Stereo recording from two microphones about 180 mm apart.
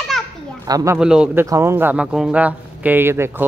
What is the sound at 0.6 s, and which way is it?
Speech, 20° right (ahead or behind).